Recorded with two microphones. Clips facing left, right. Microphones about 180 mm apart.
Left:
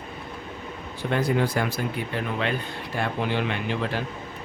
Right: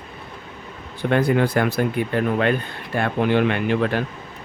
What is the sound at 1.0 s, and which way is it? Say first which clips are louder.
Speech: right 5 dB; 60° right (ahead or behind).